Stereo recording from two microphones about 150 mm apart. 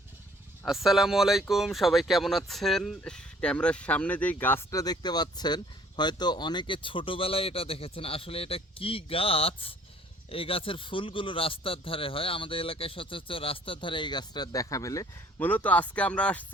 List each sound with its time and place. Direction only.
0.6 s a man's voice: centre (ahead or behind); by 15.0 s 20° left (ahead or behind)
15.4 s speech: 10° left (ahead or behind)